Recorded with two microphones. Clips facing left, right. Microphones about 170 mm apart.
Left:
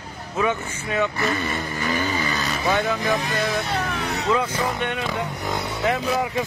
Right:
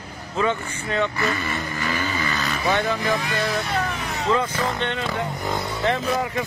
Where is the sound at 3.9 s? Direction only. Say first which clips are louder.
Left 1 dB; 70° left (ahead or behind).